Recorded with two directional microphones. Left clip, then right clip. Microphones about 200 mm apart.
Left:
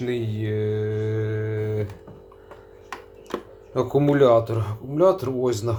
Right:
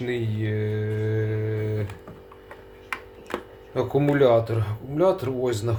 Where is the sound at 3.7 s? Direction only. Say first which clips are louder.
Left 2 dB; 5° left (ahead or behind).